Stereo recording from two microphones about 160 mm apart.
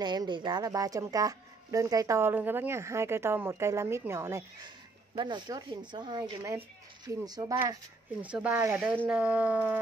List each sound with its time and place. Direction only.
0.0 s speech: 25° right (ahead or behind)
8.2 s speech: 10° right (ahead or behind)